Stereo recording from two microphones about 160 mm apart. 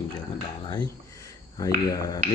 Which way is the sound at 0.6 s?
25° left (ahead or behind).